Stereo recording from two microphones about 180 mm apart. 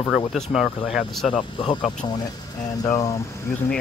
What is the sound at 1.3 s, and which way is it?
Speech, 30° left (ahead or behind).